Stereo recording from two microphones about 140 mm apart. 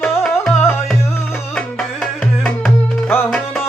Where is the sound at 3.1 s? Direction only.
15° left (ahead or behind).